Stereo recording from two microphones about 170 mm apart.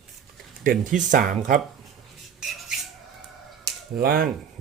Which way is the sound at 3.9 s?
60° right (ahead or behind).